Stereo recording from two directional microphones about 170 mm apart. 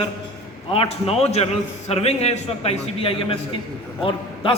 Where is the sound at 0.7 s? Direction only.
35° left (ahead or behind).